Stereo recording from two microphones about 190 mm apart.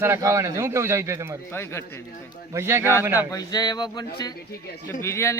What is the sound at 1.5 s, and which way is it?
Speech, 15° left (ahead or behind).